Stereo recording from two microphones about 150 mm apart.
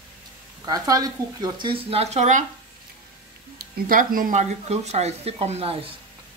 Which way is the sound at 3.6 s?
70° right (ahead or behind).